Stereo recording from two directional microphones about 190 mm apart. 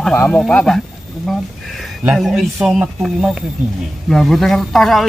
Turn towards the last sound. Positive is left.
turn(degrees=0)  # may be behind; listen again after turning